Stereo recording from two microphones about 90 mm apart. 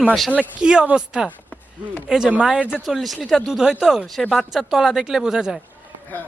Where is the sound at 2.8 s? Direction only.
Centre (ahead or behind).